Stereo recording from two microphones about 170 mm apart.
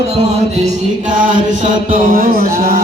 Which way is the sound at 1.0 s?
50° right (ahead or behind).